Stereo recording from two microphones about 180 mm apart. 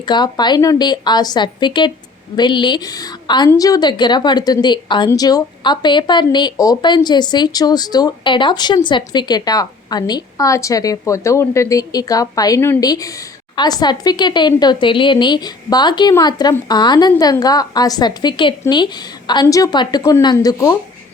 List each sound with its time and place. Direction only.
0.0 s a woman's voice: 25° left (ahead or behind)